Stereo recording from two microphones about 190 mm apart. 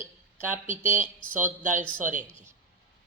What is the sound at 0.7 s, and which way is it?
A woman's voice, 40° right (ahead or behind).